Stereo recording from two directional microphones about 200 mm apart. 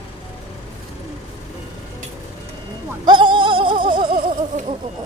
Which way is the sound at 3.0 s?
25° right (ahead or behind).